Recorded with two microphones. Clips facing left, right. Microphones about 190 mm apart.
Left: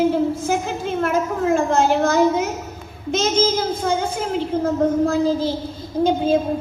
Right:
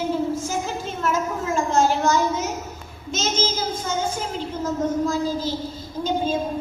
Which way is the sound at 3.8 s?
60° left (ahead or behind).